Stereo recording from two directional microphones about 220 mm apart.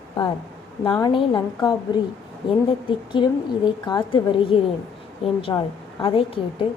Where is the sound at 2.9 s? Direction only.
20° left (ahead or behind).